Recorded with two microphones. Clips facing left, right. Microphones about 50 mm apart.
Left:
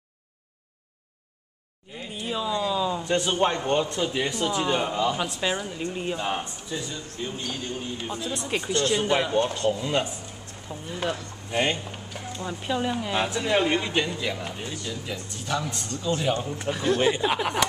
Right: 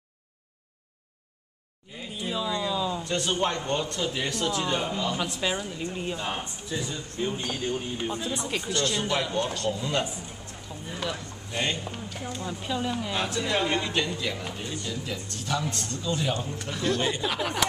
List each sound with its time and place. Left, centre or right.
2.0 s a woman's voice: centre
8.5 s a woman's voice: centre
11.8 s a woman's voice: centre